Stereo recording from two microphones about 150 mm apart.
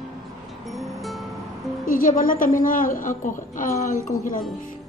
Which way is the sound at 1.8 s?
65° left (ahead or behind).